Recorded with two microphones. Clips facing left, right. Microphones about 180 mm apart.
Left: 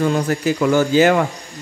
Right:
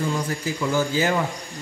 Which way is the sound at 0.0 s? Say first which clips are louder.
Left 8 dB; 70° left (ahead or behind).